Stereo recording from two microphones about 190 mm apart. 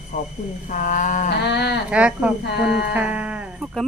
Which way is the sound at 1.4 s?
60° left (ahead or behind).